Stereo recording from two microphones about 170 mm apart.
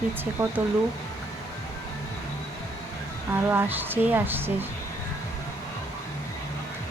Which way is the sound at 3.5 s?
10° right (ahead or behind).